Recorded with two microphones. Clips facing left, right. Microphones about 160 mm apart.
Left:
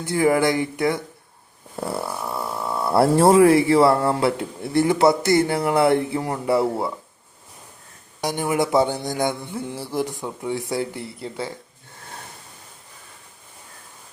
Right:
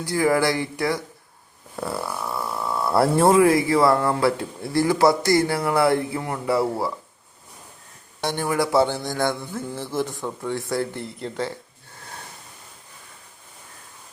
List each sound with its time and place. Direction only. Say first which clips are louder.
0.0 s speech: left 2 dB; 20° left (ahead or behind)
1.8 s snoring: left 1 dB; 25° left (ahead or behind)
2.6 s speech: left 2 dB; 25° left (ahead or behind)
8.4 s a sound: left 1 dB; 20° left (ahead or behind)